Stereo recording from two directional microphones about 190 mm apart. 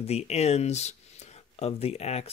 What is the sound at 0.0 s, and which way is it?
Speech, 35° left (ahead or behind).